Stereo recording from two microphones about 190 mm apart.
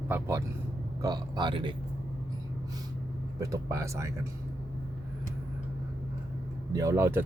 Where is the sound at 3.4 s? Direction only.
15° right (ahead or behind).